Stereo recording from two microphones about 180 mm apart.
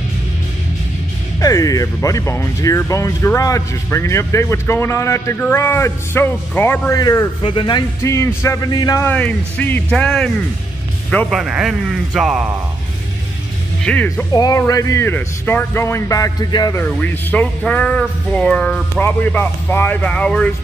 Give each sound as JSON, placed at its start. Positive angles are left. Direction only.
{"t": 1.4, "sound": "speech", "side_deg": 20}
{"t": 13.8, "sound": "speech", "side_deg": 5}
{"t": 14.3, "sound": "speech", "side_deg": 20}
{"t": 16.8, "sound": "speech", "side_deg": 10}